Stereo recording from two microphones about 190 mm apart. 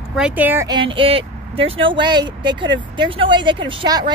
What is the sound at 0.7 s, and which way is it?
Speech, 25° right (ahead or behind).